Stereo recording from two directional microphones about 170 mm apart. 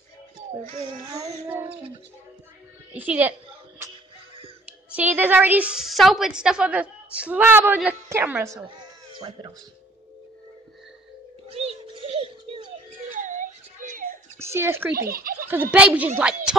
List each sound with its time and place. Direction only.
0.6 s a child's voice: 30° right (ahead or behind)
1.5 s a woman's voice: 10° right (ahead or behind)
2.9 s a woman's voice: 10° right (ahead or behind)
4.9 s a woman's voice: 10° right (ahead or behind)
8.5 s baby cry: 25° right (ahead or behind)
11.4 s a sound: 35° right (ahead or behind)
13.1 s whimper: 50° right (ahead or behind)
14.4 s speech: 15° right (ahead or behind)
15.0 s speech: 60° right (ahead or behind)
15.4 s a woman's voice: 10° right (ahead or behind)